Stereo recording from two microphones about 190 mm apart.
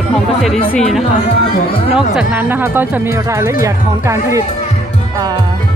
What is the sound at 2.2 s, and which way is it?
Speech, 10° right (ahead or behind).